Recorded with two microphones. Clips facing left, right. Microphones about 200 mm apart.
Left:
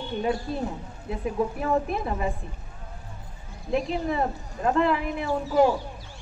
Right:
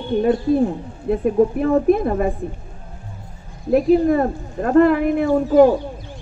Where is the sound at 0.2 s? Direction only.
50° right (ahead or behind).